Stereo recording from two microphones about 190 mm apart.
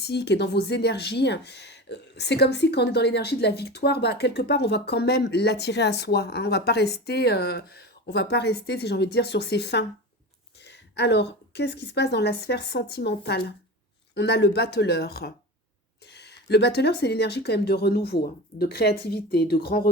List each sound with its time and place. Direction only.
0.0 s speech: 65° left (ahead or behind)